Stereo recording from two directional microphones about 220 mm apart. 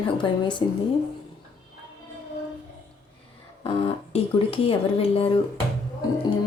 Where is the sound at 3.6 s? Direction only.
30° left (ahead or behind).